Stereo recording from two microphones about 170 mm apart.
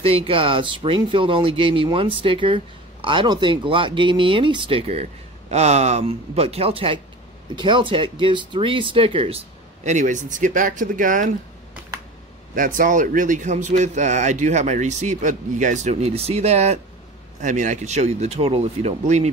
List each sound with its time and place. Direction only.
0.0 s speech: 30° right (ahead or behind); by 11.3 s 50° right (ahead or behind)
12.5 s a man's voice: 50° right (ahead or behind)